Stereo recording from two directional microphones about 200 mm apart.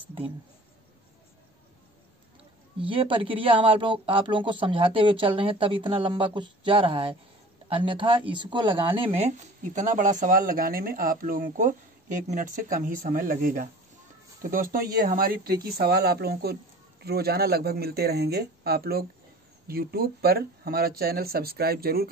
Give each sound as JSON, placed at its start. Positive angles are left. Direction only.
{"t": 2.8, "sound": "speech", "side_deg": -25}